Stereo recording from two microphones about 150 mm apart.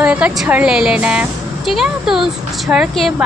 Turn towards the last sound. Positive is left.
turn(degrees=0)  # may be behind; listen again after turning